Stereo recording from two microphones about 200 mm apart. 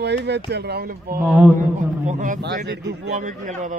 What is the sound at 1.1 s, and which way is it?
Speech, centre (ahead or behind).